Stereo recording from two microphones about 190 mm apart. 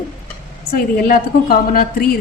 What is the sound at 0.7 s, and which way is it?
A woman's voice, 50° left (ahead or behind).